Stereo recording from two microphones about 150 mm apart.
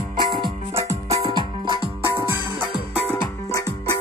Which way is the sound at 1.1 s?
30° right (ahead or behind).